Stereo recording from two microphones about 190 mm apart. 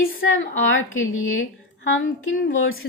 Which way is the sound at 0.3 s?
90° left.